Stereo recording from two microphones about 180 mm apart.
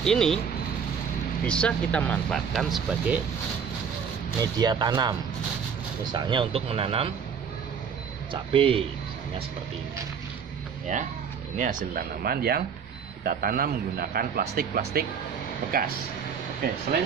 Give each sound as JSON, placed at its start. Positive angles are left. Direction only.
{"t": 0.0, "sound": "speech", "side_deg": 5}
{"t": 1.4, "sound": "speech", "side_deg": 5}
{"t": 4.4, "sound": "speech", "side_deg": -20}
{"t": 6.1, "sound": "speech", "side_deg": -25}
{"t": 8.3, "sound": "speech", "side_deg": -30}
{"t": 11.5, "sound": "speech", "side_deg": -40}
{"t": 12.2, "sound": "a man's voice", "side_deg": -60}